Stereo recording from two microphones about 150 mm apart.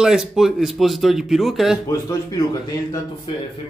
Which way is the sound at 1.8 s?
25° left (ahead or behind).